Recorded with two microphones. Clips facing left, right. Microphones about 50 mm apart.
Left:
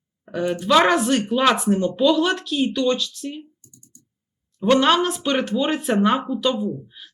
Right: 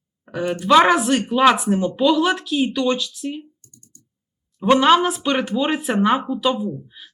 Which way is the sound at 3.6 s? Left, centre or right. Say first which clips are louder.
Left 1 dB; right.